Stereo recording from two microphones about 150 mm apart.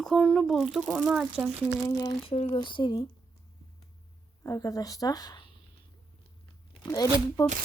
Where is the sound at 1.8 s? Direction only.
20° left (ahead or behind).